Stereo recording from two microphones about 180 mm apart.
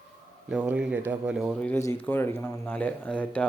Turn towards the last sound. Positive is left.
turn(degrees=5)  # may be behind; listen again after turning